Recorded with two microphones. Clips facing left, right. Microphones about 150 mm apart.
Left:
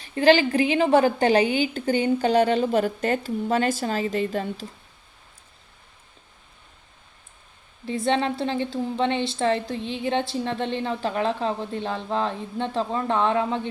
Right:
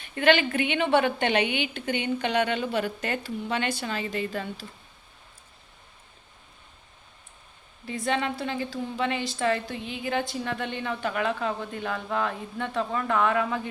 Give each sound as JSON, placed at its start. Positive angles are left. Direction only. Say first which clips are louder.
{"t": 0.0, "sound": "a woman's voice", "louder": "left 4 dB", "side_deg": 35}
{"t": 7.9, "sound": "speech", "louder": "left 5 dB", "side_deg": 30}